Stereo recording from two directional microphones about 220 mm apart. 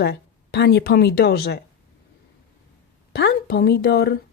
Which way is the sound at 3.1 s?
50° left (ahead or behind).